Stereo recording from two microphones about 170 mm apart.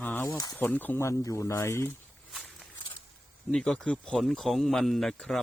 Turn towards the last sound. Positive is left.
turn(degrees=5)  # may be behind; listen again after turning